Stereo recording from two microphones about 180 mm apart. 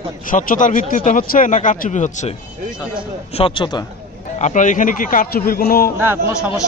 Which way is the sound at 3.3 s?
30° left (ahead or behind).